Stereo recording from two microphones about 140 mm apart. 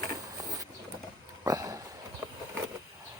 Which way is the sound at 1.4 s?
25° right (ahead or behind).